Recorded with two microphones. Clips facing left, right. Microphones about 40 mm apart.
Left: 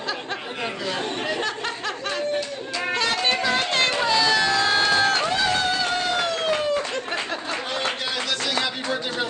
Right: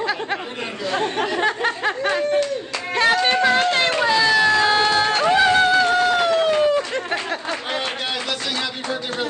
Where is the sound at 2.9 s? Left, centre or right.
Right.